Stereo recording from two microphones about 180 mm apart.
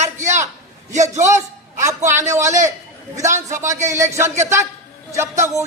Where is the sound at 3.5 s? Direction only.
15° right (ahead or behind).